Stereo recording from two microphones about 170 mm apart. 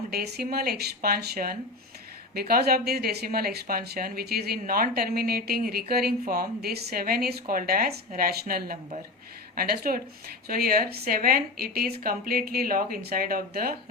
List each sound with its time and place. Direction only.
0.1 s speech: 65° right (ahead or behind)